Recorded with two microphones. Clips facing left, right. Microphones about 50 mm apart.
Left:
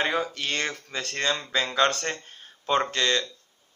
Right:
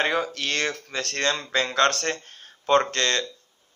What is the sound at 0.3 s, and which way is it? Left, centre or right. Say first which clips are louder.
A man's voice: right 2 dB; centre.